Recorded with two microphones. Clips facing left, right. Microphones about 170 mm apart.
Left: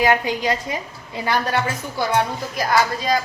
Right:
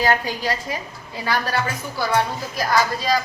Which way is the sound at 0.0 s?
20° left (ahead or behind).